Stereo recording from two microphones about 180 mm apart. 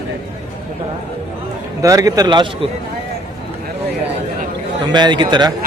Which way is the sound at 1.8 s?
20° right (ahead or behind).